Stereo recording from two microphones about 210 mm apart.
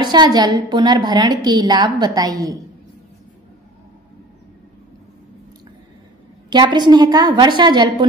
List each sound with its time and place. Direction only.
0.0 s a woman's voice: 20° right (ahead or behind)
6.5 s a woman's voice: 20° right (ahead or behind)